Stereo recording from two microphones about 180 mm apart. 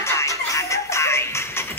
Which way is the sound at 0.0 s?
15° left (ahead or behind).